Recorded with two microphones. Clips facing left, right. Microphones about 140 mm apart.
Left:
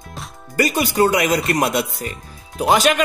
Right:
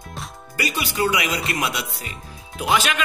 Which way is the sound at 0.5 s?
45° left (ahead or behind).